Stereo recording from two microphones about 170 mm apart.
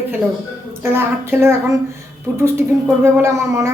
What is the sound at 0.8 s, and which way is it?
Speech, 15° right (ahead or behind).